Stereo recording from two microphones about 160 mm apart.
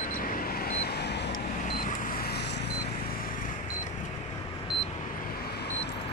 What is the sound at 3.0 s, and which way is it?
Vehicle, 60° left (ahead or behind).